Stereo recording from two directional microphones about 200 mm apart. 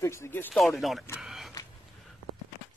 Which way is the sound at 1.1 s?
Centre (ahead or behind).